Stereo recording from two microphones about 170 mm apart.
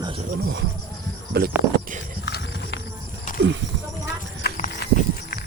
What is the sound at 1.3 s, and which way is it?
Speech, 70° right (ahead or behind).